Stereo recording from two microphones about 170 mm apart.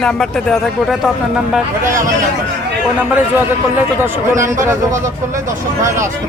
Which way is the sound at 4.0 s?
15° right (ahead or behind).